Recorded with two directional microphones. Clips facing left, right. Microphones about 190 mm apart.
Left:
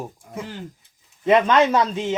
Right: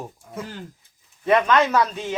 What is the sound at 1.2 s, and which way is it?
Speech, 20° left (ahead or behind).